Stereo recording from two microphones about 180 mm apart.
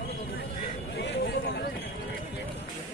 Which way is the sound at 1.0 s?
70° left (ahead or behind).